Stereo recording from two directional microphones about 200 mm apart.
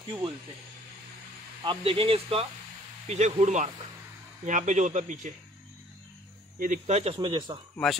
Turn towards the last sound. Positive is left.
turn(degrees=-25)  # may be behind; listen again after turning